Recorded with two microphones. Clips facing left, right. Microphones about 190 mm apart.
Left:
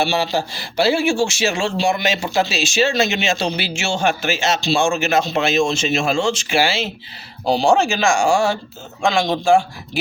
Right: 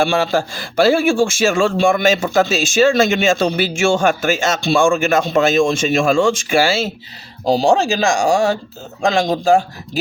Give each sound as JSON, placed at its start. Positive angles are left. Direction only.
{"t": 0.0, "sound": "speech", "side_deg": -50}